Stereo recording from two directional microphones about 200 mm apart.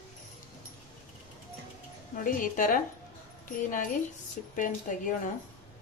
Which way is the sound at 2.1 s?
45° left (ahead or behind).